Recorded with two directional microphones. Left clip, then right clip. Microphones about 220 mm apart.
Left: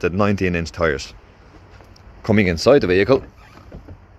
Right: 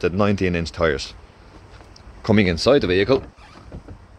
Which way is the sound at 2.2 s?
5° left (ahead or behind).